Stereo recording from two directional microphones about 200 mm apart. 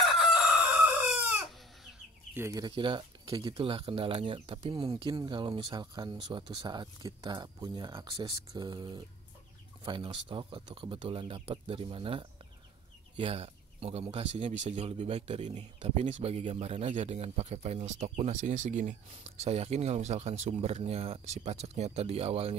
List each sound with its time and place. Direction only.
0.2 s chicken: 5° right (ahead or behind)
1.9 s speech: 10° right (ahead or behind); by 22.6 s 30° right (ahead or behind)